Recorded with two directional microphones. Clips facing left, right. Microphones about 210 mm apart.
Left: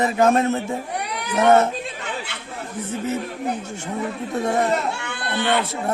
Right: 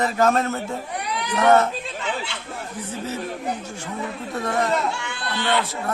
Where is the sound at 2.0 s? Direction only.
55° left (ahead or behind).